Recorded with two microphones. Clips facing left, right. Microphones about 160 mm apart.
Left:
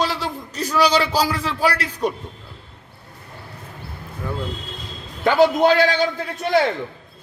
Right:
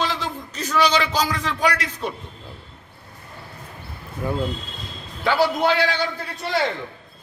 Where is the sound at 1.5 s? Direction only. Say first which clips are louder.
Left 1 dB; 30° left (ahead or behind).